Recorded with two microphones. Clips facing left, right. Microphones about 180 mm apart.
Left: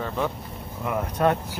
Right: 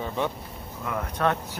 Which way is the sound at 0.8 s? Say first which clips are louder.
Left 3 dB; 20° left (ahead or behind).